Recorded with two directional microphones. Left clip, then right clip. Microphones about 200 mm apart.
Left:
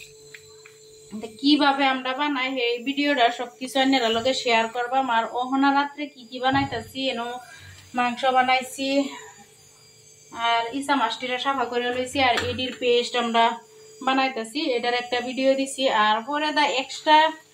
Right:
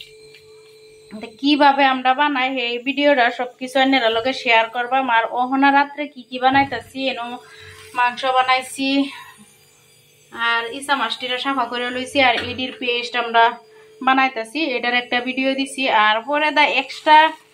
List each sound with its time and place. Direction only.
1.5 s a woman's voice: 10° right (ahead or behind)
10.3 s a woman's voice: 25° right (ahead or behind)